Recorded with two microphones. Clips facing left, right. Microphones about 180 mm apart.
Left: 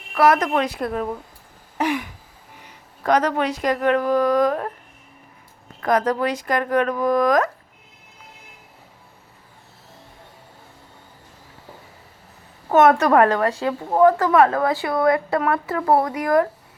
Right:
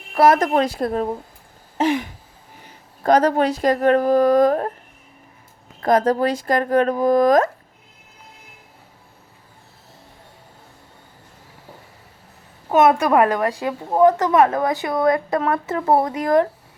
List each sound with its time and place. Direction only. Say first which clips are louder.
0.1 s a woman's voice: right 2 dB; 30° right (ahead or behind)
5.8 s speech: right 3 dB; 30° right (ahead or behind)
12.7 s speech: left 1 dB; 10° right (ahead or behind)